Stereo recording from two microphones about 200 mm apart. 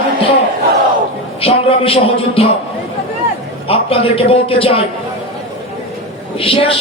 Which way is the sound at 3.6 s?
30° left (ahead or behind).